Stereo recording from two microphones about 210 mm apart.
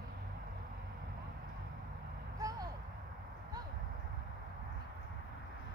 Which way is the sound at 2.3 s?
15° right (ahead or behind).